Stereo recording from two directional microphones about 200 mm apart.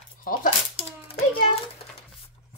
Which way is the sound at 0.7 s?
30° left (ahead or behind).